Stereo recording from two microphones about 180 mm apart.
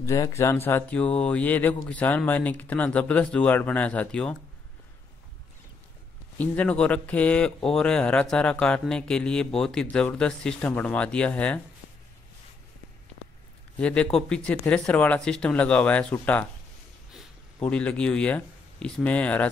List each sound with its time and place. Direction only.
0.0 s speech: 15° left (ahead or behind)
6.3 s speech: 10° left (ahead or behind)
13.7 s speech: 5° left (ahead or behind)